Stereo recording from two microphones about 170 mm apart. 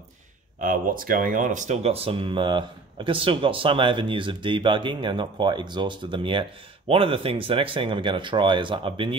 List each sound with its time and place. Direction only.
0.6 s speech: 55° right (ahead or behind); by 9.1 s 30° right (ahead or behind)